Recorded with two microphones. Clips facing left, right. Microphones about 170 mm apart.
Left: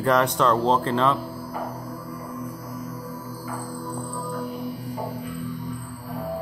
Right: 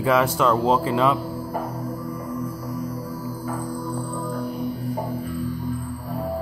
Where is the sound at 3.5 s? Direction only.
15° right (ahead or behind).